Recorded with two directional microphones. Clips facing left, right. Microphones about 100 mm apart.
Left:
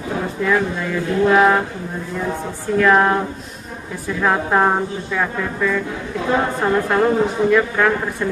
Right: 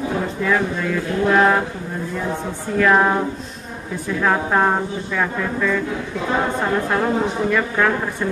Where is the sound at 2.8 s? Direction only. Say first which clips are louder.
Left 1 dB; centre (ahead or behind).